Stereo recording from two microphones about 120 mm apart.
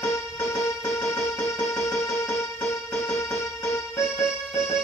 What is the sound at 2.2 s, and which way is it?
Music, 15° left (ahead or behind).